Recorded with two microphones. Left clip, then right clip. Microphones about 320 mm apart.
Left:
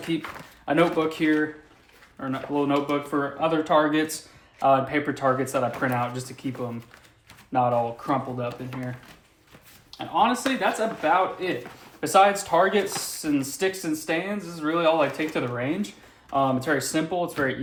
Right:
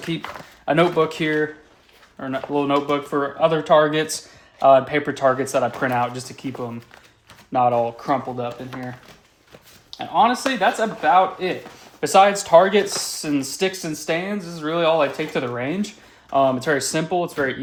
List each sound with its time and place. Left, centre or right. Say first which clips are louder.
0.6 s speech: right 4 dB; right
7.5 s speech: right 4 dB; right
10.0 s speech: right 5 dB; right